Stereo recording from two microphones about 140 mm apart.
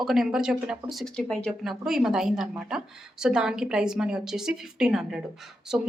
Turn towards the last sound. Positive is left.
turn(degrees=-5)  # may be behind; listen again after turning